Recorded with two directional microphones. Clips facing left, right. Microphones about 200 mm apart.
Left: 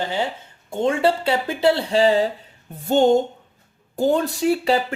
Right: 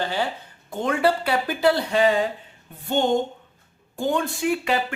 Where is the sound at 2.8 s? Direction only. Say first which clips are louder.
Left 5 dB; 40° left (ahead or behind).